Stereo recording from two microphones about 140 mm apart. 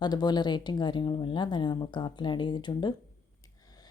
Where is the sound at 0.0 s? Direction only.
30° left (ahead or behind).